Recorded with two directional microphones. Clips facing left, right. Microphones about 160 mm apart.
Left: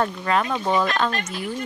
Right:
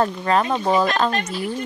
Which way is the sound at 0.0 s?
35° right (ahead or behind).